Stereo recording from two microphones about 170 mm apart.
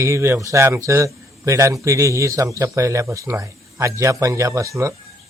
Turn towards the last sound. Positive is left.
turn(degrees=-20)  # may be behind; listen again after turning